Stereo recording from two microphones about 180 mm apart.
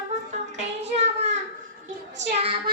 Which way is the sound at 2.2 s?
35° right (ahead or behind).